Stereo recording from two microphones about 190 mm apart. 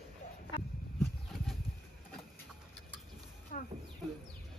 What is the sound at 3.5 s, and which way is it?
Speech, 45° left (ahead or behind).